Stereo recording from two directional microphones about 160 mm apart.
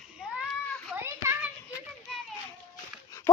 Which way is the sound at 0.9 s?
10° right (ahead or behind).